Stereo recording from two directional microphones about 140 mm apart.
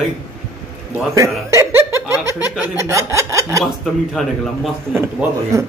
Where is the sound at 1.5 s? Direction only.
20° right (ahead or behind).